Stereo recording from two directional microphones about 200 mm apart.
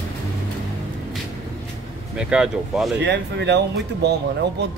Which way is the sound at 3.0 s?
60° right (ahead or behind).